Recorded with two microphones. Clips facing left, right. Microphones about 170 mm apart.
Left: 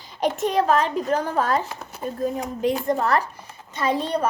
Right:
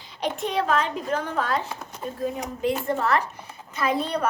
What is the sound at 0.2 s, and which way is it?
A child's voice, 45° left (ahead or behind).